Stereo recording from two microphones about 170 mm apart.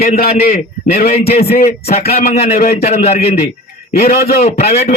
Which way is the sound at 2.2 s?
40° left (ahead or behind).